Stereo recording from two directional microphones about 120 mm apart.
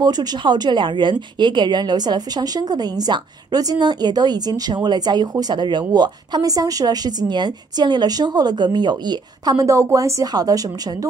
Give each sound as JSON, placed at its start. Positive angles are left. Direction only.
{"t": 0.0, "sound": "a woman's voice", "side_deg": -35}